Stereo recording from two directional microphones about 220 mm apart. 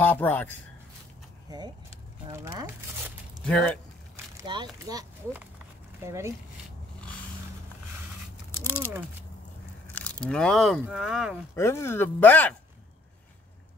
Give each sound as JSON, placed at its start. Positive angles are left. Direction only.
{"t": 0.0, "sound": "speech", "side_deg": 10}
{"t": 1.5, "sound": "a sound", "side_deg": -20}
{"t": 3.4, "sound": "speech", "side_deg": 5}
{"t": 4.5, "sound": "speech", "side_deg": -20}
{"t": 8.5, "sound": "speech", "side_deg": 10}
{"t": 10.2, "sound": "speech", "side_deg": 5}
{"t": 11.5, "sound": "speech", "side_deg": 10}